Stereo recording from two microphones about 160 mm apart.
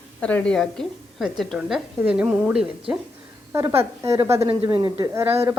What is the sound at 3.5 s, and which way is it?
A woman's voice, 20° right (ahead or behind).